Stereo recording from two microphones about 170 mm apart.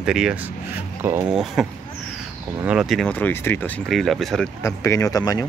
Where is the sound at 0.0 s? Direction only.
5° right (ahead or behind).